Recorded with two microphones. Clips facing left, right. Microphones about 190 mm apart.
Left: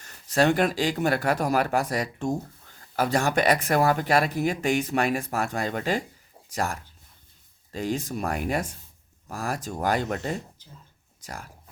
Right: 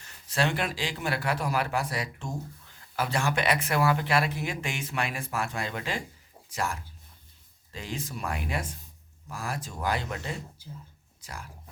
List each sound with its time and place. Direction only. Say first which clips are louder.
0.0 s speech: left 7 dB; 45° left (ahead or behind)